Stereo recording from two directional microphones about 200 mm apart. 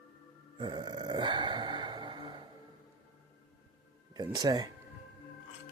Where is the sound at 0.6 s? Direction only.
25° right (ahead or behind).